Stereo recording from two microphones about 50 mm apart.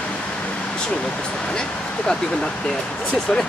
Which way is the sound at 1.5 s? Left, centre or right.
Centre.